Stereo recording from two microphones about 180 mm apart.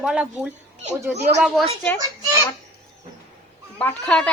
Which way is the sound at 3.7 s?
5° left (ahead or behind).